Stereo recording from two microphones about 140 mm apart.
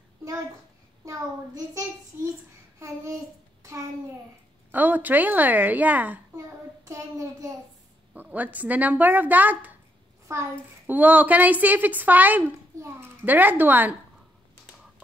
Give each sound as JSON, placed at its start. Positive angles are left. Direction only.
{"t": 1.0, "sound": "a child's voice", "side_deg": -25}
{"t": 4.6, "sound": "a child's voice", "side_deg": -15}
{"t": 8.1, "sound": "a child's voice", "side_deg": -10}